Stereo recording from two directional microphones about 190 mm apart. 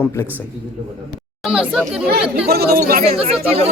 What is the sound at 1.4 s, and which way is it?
Speech, 5° right (ahead or behind).